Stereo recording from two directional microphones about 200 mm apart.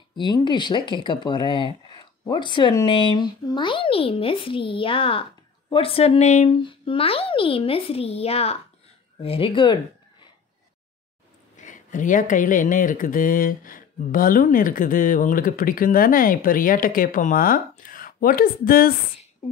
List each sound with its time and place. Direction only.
0.1 s speech: 20° left (ahead or behind)
11.5 s speech: 40° left (ahead or behind)